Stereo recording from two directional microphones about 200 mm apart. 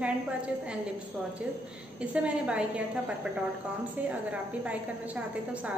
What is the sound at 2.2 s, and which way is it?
Speech, 5° right (ahead or behind).